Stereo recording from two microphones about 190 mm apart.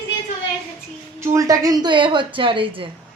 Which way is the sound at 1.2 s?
20° right (ahead or behind).